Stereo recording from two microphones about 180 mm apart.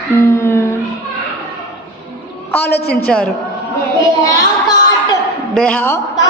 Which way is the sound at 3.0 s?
5° left (ahead or behind).